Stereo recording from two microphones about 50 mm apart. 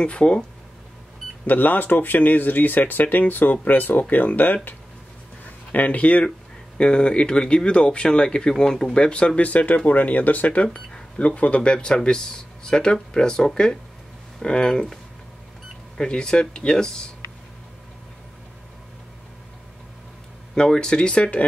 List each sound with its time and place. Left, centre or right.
0.0 s speech: left
1.5 s speech: left
5.7 s speech: left; by 15.0 s centre
16.0 s speech: centre
20.5 s speech: centre